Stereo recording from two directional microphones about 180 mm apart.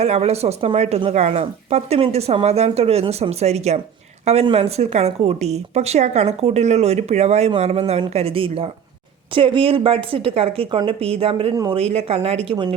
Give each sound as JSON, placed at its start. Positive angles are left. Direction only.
{"t": 0.0, "sound": "a woman's voice", "side_deg": -35}